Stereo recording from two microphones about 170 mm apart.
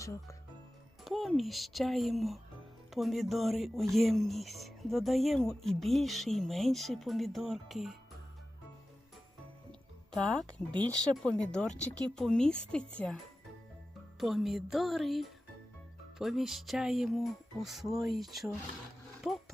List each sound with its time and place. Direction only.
0.0 s speech: 20° left (ahead or behind)
1.0 s speech: centre (ahead or behind)
10.1 s speech: 5° left (ahead or behind)
14.2 s speech: centre (ahead or behind)